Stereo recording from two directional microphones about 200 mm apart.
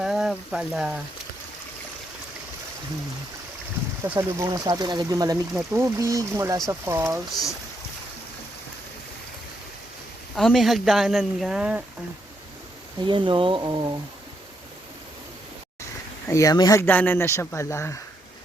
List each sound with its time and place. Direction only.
0.0 s speech: centre (ahead or behind)
4.1 s speech: 15° right (ahead or behind)
10.3 s speech: centre (ahead or behind)
13.1 s speech: 25° right (ahead or behind)
16.3 s speech: 15° left (ahead or behind)